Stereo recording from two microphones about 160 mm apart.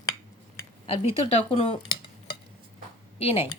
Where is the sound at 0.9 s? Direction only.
35° left (ahead or behind).